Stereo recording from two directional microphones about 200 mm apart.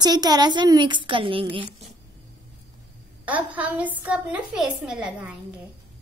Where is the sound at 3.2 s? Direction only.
5° right (ahead or behind).